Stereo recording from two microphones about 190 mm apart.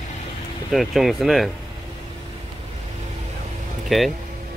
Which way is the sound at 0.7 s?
Centre (ahead or behind).